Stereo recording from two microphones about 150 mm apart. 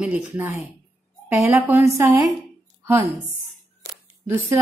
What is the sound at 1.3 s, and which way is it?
Speech, 15° right (ahead or behind).